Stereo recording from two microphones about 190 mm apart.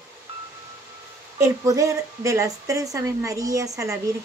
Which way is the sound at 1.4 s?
15° right (ahead or behind).